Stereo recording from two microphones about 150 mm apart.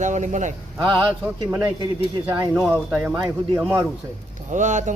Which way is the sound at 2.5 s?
Centre (ahead or behind).